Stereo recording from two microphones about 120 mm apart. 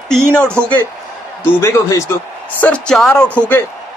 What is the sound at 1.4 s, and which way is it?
Speech, 25° left (ahead or behind).